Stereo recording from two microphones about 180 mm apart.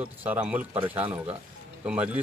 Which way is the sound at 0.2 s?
10° right (ahead or behind).